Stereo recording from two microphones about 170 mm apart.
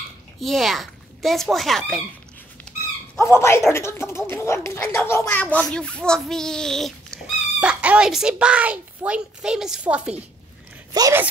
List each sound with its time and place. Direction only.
0.4 s a child's voice: centre (ahead or behind)
3.2 s speech: 15° left (ahead or behind); by 10.1 s 5° right (ahead or behind)
10.9 s speech: 20° right (ahead or behind)